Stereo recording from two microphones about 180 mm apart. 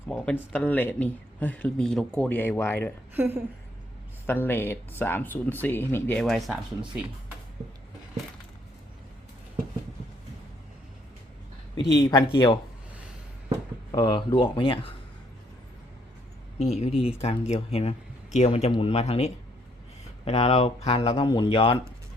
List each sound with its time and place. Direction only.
0.1 s speech: 10° left (ahead or behind)
3.2 s a sound: 10° right (ahead or behind)
4.3 s speech: 10° left (ahead or behind); by 7.1 s 5° right (ahead or behind)
11.7 s speech: 20° left (ahead or behind)
13.9 s speech: 25° left (ahead or behind)
16.6 s speech: 35° left (ahead or behind)